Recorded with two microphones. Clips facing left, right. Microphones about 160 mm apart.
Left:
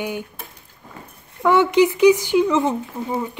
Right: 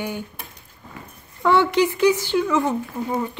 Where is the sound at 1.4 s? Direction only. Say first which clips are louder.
Left 3 dB; 15° left (ahead or behind).